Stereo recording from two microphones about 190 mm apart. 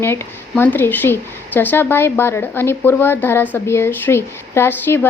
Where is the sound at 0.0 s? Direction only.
10° left (ahead or behind).